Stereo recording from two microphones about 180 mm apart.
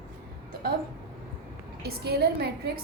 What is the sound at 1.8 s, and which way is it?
Speech, 60° right (ahead or behind).